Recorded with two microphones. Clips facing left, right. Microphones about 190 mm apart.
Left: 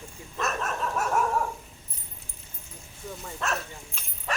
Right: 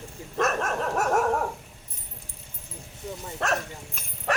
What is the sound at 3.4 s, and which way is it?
Speech, 70° right (ahead or behind).